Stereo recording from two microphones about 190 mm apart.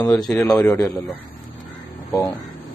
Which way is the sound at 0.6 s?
15° left (ahead or behind).